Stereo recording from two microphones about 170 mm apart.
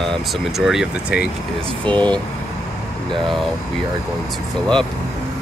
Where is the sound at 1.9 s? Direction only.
30° right (ahead or behind).